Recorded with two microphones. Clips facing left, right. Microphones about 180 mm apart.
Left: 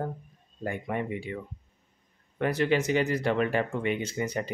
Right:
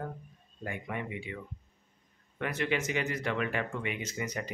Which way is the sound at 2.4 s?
35° left (ahead or behind).